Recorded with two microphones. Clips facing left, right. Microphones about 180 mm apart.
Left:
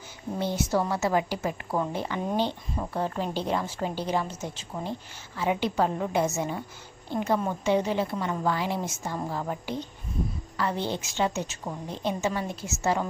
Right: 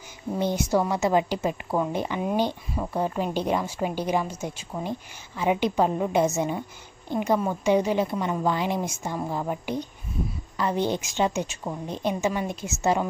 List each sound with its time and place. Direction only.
0.4 s a woman's voice: 15° right (ahead or behind)